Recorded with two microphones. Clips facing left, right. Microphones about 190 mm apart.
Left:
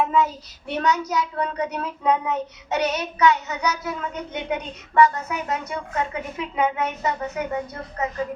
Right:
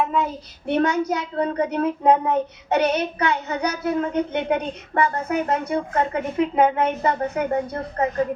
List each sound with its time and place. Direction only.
0.7 s a child's voice: 55° right (ahead or behind)